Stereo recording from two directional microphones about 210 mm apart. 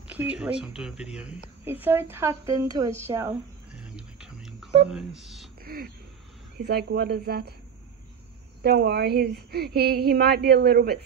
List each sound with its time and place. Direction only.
0.1 s a woman's voice: 5° right (ahead or behind)
5.6 s a sound: 45° right (ahead or behind)
6.6 s a woman's voice: 50° right (ahead or behind)
8.6 s a woman's voice: 50° right (ahead or behind)